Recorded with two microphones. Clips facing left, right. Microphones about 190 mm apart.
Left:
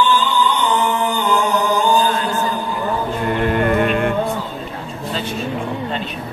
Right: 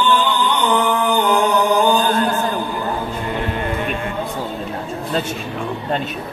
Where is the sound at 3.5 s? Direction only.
60° left (ahead or behind).